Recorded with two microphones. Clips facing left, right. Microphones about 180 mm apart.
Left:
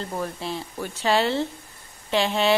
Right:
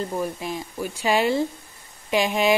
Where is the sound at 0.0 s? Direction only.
15° right (ahead or behind).